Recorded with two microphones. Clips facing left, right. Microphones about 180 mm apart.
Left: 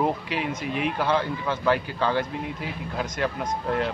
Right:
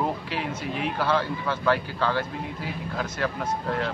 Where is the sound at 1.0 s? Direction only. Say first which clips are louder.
Right 1 dB; 15° left (ahead or behind).